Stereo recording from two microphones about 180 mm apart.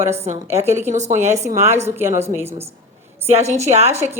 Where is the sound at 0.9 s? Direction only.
40° right (ahead or behind).